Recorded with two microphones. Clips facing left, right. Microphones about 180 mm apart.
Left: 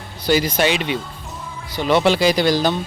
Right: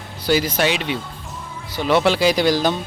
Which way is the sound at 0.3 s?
5° right (ahead or behind).